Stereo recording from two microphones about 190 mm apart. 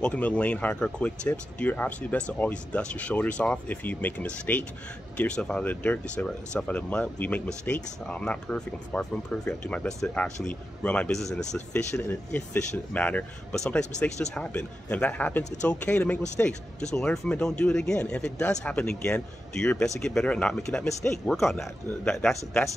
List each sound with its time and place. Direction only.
0.0 s speech: 5° left (ahead or behind)